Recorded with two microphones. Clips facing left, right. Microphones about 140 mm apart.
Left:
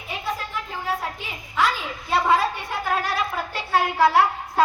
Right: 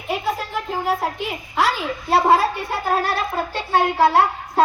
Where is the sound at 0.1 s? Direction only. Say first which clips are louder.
Right 6 dB; 60° right (ahead or behind).